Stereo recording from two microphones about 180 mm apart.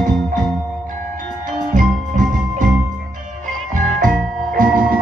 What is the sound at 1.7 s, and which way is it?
Music, 45° right (ahead or behind).